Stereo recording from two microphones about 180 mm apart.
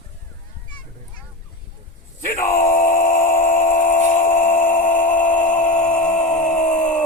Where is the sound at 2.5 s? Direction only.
50° left (ahead or behind).